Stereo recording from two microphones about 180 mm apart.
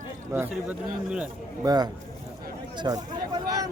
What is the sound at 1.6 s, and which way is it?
Speech, 20° right (ahead or behind).